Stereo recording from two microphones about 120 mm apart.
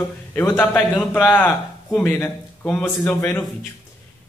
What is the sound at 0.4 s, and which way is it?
A man's voice, 15° left (ahead or behind).